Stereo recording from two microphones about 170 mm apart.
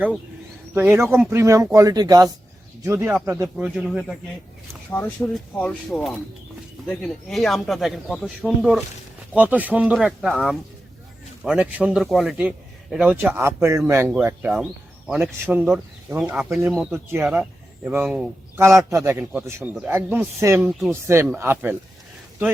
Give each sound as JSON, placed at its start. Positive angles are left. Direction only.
{"t": 0.7, "sound": "a man's voice", "side_deg": -15}
{"t": 3.8, "sound": "speech", "side_deg": 0}
{"t": 4.7, "sound": "a man's voice", "side_deg": 10}
{"t": 20.6, "sound": "speech", "side_deg": 0}
{"t": 20.9, "sound": "a man's voice", "side_deg": -15}